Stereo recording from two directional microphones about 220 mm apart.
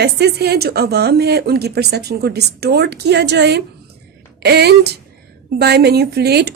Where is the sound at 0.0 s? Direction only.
45° right (ahead or behind).